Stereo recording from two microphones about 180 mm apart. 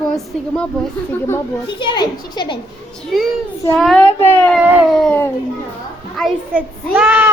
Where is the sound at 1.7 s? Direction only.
25° left (ahead or behind).